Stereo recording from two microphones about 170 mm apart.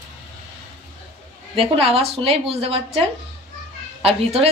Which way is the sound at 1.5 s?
35° right (ahead or behind).